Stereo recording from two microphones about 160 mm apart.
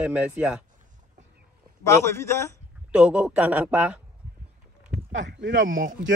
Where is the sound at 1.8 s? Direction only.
20° left (ahead or behind).